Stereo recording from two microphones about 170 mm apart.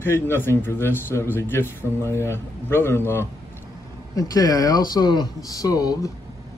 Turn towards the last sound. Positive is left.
turn(degrees=20)  # may be behind; listen again after turning